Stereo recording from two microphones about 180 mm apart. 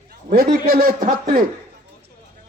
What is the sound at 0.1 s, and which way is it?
A man's voice, 55° right (ahead or behind).